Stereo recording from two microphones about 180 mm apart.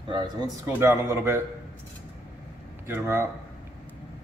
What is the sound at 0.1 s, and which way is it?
Speech, 20° right (ahead or behind).